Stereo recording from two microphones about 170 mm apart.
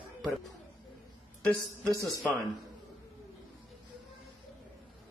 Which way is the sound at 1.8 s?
20° right (ahead or behind).